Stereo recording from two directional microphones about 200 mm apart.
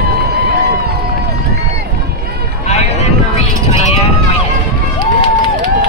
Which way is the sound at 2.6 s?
35° left (ahead or behind).